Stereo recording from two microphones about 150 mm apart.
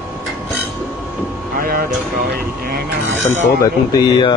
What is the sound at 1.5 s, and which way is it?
Speech, 70° right (ahead or behind).